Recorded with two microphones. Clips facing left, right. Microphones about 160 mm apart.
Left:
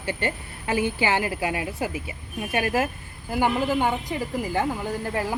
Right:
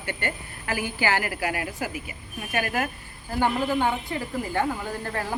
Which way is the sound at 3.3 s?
10° left (ahead or behind).